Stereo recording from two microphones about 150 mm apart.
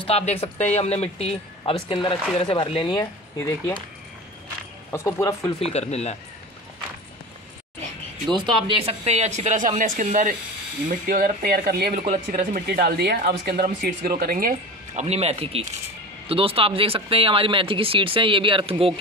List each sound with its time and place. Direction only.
0.0 s speech: 45° left (ahead or behind); by 3.7 s 20° left (ahead or behind)
4.9 s speech: 20° left (ahead or behind)
5.6 s speech: 45° left (ahead or behind)
8.3 s speech: 35° right (ahead or behind); by 14.5 s 75° right (ahead or behind)
15.0 s speech: 45° right (ahead or behind)